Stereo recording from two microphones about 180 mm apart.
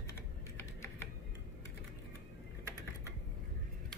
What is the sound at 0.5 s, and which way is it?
Typing, 15° left (ahead or behind).